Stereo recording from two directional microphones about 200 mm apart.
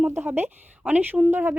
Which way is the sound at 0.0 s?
10° right (ahead or behind).